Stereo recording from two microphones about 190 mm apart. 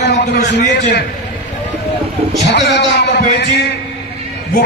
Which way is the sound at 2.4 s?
65° left (ahead or behind).